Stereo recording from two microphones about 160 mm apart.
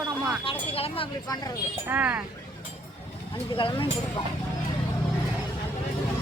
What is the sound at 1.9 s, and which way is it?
Speech, 10° right (ahead or behind).